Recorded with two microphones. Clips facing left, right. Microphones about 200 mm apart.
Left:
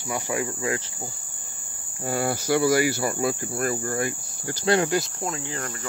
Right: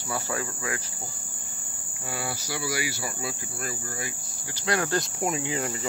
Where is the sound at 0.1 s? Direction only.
15° left (ahead or behind).